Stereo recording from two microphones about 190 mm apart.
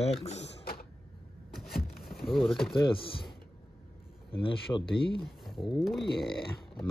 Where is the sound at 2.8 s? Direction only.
25° left (ahead or behind).